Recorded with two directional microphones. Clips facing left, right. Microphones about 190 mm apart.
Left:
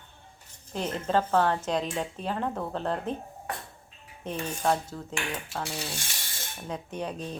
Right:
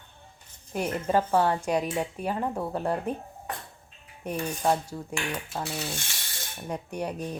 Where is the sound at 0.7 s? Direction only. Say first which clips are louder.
Right 2 dB; 10° right (ahead or behind).